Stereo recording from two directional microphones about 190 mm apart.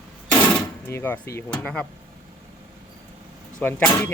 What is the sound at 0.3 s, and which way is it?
Speech, 10° left (ahead or behind).